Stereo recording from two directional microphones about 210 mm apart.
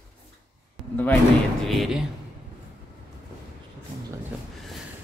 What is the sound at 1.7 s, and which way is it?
Speech, centre (ahead or behind).